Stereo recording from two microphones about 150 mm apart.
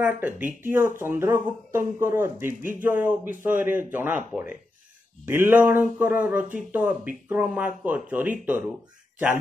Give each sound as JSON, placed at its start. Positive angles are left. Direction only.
{"t": 0.0, "sound": "speech", "side_deg": -10}